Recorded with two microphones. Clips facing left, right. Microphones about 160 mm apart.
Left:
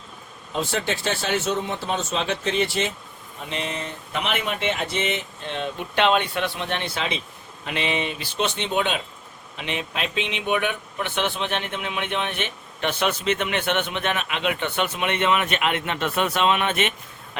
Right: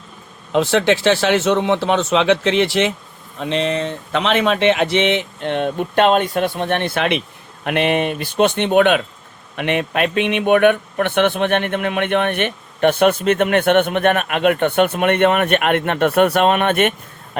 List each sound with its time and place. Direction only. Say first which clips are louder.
0.5 s speech: right 11 dB; 90° right; by 16.9 s 55° right (ahead or behind)